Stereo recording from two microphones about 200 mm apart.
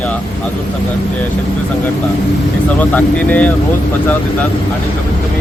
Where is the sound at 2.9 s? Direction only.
5° left (ahead or behind).